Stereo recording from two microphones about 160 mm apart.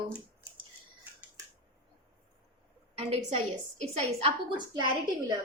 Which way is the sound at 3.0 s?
40° right (ahead or behind).